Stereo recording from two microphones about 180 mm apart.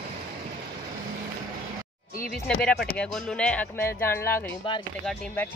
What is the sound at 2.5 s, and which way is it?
Speech, 5° left (ahead or behind).